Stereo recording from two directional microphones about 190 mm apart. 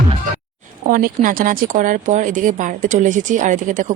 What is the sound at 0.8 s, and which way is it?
Speech, 45° right (ahead or behind).